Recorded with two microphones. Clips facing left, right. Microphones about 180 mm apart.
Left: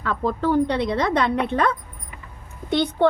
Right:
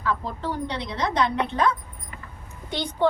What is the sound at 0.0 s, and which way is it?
Speech, 55° left (ahead or behind).